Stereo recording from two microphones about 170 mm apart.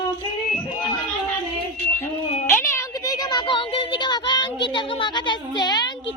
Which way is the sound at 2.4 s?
20° left (ahead or behind).